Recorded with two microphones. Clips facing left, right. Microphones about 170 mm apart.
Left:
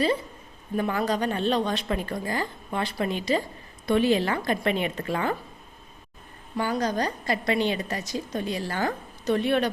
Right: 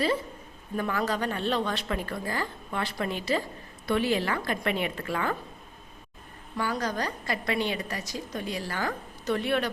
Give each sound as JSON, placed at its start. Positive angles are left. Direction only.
{"t": 0.8, "sound": "a woman's voice", "side_deg": 20}
{"t": 6.6, "sound": "a woman's voice", "side_deg": 20}